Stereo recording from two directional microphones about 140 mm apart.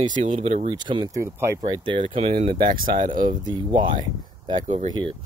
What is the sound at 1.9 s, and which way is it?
Speech, 35° right (ahead or behind).